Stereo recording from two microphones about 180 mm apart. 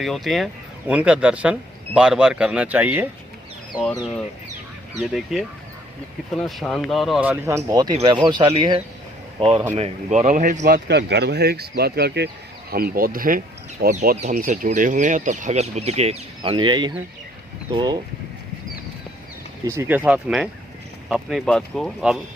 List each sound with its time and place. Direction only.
0.0 s speech: centre (ahead or behind)
5.1 s speech: centre (ahead or behind); by 8.8 s 25° right (ahead or behind)
9.7 s speech: 35° right (ahead or behind)
10.8 s speech: 65° right (ahead or behind)
12.7 s speech: 55° right (ahead or behind); by 18.0 s 25° right (ahead or behind)
19.6 s speech: 15° right (ahead or behind)